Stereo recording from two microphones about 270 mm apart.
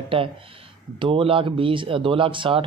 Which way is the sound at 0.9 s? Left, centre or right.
Centre.